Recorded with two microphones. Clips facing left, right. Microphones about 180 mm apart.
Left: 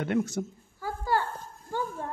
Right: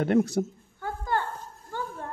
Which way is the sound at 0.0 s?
35° right (ahead or behind).